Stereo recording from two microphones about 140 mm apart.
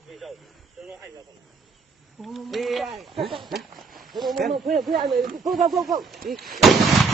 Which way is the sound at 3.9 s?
90° right.